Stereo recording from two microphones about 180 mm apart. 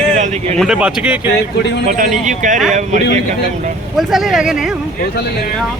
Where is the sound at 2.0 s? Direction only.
45° right (ahead or behind).